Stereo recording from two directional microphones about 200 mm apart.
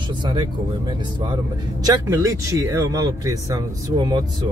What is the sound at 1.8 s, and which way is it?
Speech, 15° right (ahead or behind).